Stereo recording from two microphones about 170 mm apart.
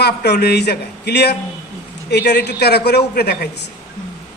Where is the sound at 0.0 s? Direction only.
75° left (ahead or behind).